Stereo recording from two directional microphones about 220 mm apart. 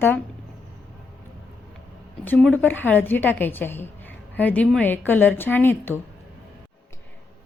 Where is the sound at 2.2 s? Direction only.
5° left (ahead or behind).